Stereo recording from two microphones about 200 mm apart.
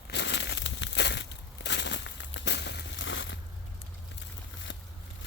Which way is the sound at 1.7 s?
60° left (ahead or behind).